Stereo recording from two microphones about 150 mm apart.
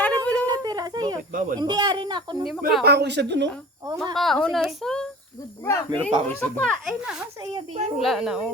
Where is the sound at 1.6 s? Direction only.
25° right (ahead or behind).